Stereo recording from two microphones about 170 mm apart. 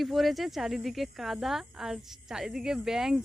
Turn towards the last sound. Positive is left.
turn(degrees=-5)  # may be behind; listen again after turning